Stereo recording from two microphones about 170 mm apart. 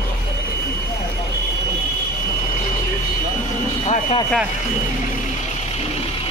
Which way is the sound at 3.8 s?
35° left (ahead or behind).